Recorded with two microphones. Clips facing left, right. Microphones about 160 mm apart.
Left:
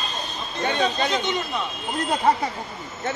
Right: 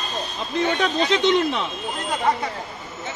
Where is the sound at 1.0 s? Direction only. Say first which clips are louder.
Right 6 dB; 85° right.